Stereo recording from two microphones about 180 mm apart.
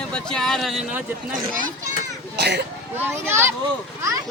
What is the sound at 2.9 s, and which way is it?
Speech, 15° right (ahead or behind).